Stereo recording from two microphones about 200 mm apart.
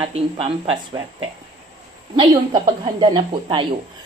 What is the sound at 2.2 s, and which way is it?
A woman's voice, 20° right (ahead or behind).